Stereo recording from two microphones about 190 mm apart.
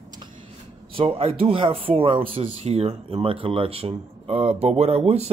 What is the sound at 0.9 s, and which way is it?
Speech, 30° right (ahead or behind).